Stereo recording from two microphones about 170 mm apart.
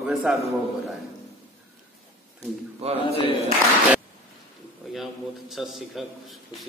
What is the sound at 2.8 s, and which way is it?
Speech, 35° right (ahead or behind).